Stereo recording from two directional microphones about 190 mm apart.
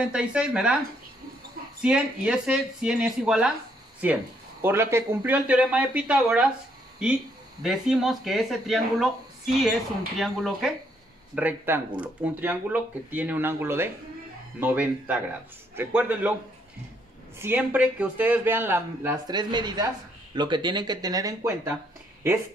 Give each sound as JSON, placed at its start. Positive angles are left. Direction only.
{"t": 0.0, "sound": "speech", "side_deg": -5}
{"t": 1.8, "sound": "speech", "side_deg": -5}
{"t": 17.4, "sound": "speech", "side_deg": -10}